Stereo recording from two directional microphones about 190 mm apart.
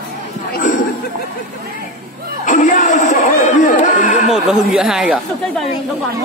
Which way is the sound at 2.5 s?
40° left (ahead or behind).